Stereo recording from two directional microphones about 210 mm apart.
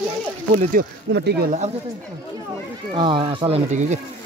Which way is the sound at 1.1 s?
50° right (ahead or behind).